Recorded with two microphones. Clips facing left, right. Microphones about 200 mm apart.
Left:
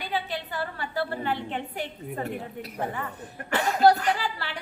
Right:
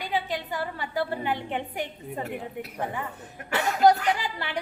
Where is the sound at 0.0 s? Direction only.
15° right (ahead or behind).